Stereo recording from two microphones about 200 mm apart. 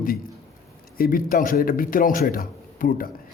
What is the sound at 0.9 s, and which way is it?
Speech, 45° left (ahead or behind).